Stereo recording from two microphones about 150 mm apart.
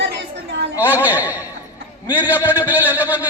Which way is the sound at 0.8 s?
10° right (ahead or behind).